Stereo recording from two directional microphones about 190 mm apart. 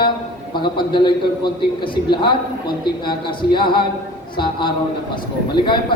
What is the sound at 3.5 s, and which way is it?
A man's voice, 25° left (ahead or behind).